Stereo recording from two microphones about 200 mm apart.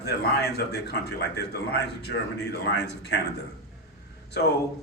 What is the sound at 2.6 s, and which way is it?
Speech, 55° left (ahead or behind).